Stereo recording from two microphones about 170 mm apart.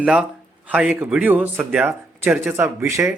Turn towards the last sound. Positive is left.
turn(degrees=-15)  # may be behind; listen again after turning